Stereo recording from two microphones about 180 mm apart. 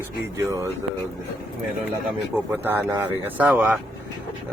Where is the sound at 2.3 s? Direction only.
10° right (ahead or behind).